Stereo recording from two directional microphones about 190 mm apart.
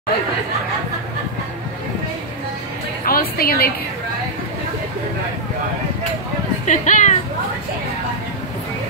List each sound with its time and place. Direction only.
3.1 s a woman's voice: 50° left (ahead or behind)
6.6 s speech: 40° left (ahead or behind)